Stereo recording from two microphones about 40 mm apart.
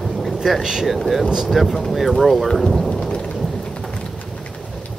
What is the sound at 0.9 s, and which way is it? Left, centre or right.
Speech, centre.